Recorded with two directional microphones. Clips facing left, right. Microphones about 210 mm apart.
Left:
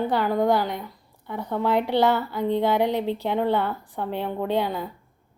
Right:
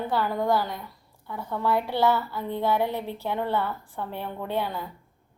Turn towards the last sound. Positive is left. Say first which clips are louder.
# left 5 dB
turn(degrees=15)  # may be behind; listen again after turning